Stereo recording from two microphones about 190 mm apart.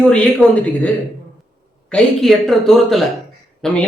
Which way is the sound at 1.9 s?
Centre (ahead or behind).